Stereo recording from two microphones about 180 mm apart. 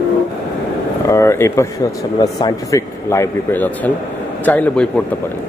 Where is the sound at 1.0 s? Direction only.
15° left (ahead or behind).